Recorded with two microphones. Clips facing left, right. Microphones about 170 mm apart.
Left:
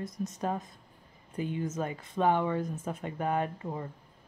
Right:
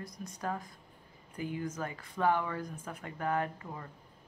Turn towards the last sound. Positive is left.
turn(degrees=25)  # may be behind; listen again after turning